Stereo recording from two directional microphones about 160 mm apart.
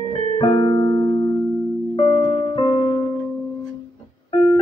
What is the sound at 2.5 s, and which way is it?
Music, 30° left (ahead or behind).